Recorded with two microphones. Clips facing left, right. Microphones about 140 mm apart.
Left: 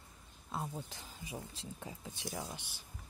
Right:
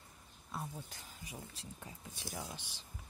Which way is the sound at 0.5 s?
25° left (ahead or behind).